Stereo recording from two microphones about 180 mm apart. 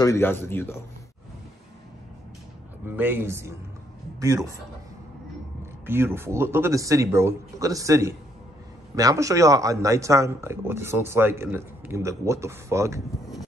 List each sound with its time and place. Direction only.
0.0 s a man's voice: 10° left (ahead or behind)
2.8 s a man's voice: 10° right (ahead or behind)
5.9 s speech: 10° right (ahead or behind)